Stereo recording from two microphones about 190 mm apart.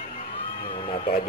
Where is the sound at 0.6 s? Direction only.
30° left (ahead or behind).